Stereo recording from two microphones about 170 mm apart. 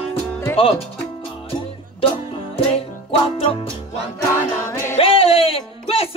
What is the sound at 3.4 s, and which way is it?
Music, 35° left (ahead or behind).